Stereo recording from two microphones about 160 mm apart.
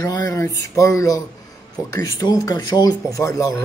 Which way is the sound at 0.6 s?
20° left (ahead or behind).